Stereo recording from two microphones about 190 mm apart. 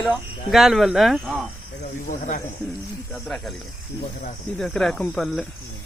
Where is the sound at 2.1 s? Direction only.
45° left (ahead or behind).